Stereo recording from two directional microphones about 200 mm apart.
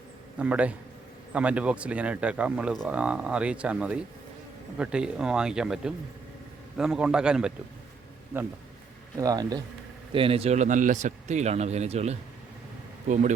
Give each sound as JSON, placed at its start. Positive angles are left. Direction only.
{"t": 0.3, "sound": "a man's voice", "side_deg": -5}
{"t": 9.1, "sound": "a man's voice", "side_deg": -20}